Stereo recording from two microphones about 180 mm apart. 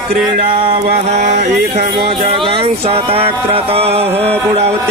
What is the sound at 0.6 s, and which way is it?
Mantra, 35° right (ahead or behind).